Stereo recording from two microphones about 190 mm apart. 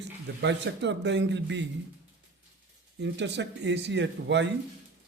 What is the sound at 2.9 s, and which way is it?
Speech, 65° right (ahead or behind).